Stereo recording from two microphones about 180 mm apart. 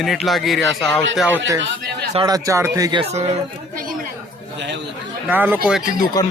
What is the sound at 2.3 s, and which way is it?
Speech, 20° right (ahead or behind).